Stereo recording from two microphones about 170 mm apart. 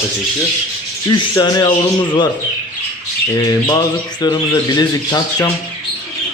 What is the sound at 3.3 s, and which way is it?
Speech, 25° left (ahead or behind).